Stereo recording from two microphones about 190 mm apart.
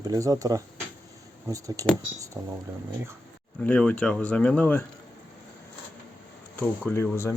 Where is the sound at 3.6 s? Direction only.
5° left (ahead or behind).